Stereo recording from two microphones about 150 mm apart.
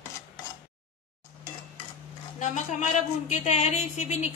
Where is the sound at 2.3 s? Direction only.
55° left (ahead or behind).